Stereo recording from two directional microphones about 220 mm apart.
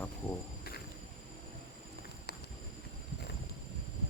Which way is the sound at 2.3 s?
45° left (ahead or behind).